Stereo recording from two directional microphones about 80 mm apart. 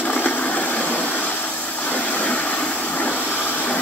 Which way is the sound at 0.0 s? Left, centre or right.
Left.